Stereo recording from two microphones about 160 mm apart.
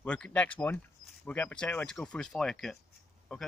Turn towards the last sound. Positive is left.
turn(degrees=5)  # may be behind; listen again after turning